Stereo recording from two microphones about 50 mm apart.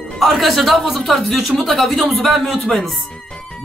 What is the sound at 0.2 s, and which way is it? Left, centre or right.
A man's voice, centre.